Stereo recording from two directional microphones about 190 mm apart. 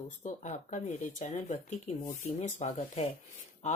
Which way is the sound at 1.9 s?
35° left (ahead or behind).